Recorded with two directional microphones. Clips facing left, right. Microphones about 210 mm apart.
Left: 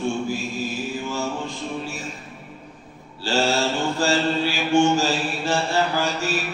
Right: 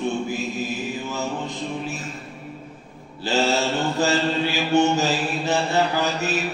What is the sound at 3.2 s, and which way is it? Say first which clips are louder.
Mantra: even; 20° right (ahead or behind).